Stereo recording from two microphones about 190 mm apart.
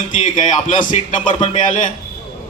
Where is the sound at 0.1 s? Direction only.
40° left (ahead or behind).